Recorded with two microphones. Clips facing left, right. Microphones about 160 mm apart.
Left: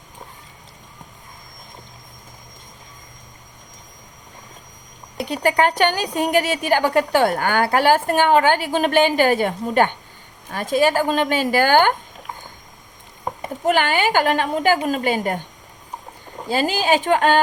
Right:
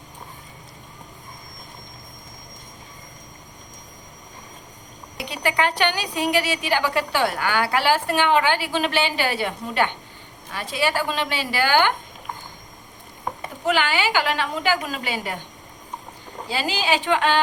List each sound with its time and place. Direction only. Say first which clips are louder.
5.1 s a woman's voice: left 5 dB; 45° left (ahead or behind)
13.7 s a woman's voice: left 4 dB; 50° left (ahead or behind)
16.5 s a woman's voice: left 5 dB; 45° left (ahead or behind)